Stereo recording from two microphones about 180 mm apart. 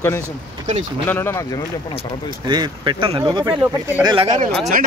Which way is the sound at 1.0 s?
10° left (ahead or behind).